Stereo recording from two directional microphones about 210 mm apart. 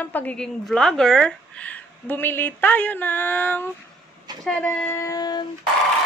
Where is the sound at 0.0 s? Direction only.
10° left (ahead or behind).